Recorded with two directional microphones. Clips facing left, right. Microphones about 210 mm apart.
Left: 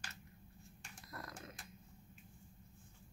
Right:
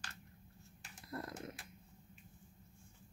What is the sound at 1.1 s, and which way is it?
Dog, 30° right (ahead or behind).